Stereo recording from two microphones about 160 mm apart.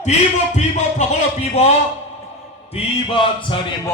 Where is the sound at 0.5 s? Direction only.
45° left (ahead or behind).